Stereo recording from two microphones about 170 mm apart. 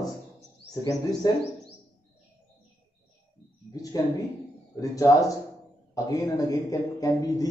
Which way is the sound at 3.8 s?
20° left (ahead or behind).